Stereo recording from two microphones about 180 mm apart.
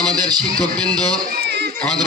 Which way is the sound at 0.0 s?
20° right (ahead or behind).